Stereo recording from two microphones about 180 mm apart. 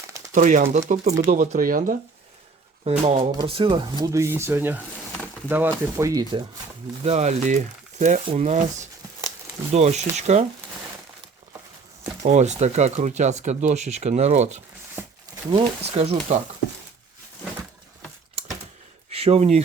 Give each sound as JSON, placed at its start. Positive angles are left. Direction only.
{"t": 0.3, "sound": "speech", "side_deg": -45}
{"t": 3.0, "sound": "speech", "side_deg": -30}
{"t": 7.0, "sound": "speech", "side_deg": -35}
{"t": 12.2, "sound": "speech", "side_deg": -40}
{"t": 18.4, "sound": "a sound", "side_deg": -35}
{"t": 19.1, "sound": "speech", "side_deg": -35}